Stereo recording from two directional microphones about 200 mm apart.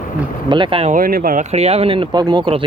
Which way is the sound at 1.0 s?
45° right (ahead or behind).